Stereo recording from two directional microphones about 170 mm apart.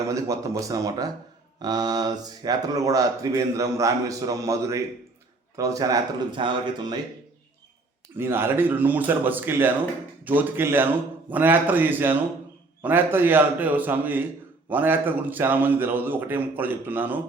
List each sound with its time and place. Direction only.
0.0 s speech: 20° right (ahead or behind)
8.1 s a man's voice: 15° right (ahead or behind)